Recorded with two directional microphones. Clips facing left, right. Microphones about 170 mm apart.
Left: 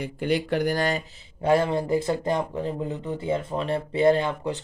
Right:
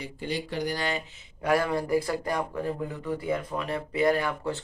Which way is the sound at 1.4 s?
25° left (ahead or behind).